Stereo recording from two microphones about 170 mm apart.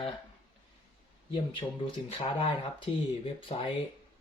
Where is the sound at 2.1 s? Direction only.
30° left (ahead or behind).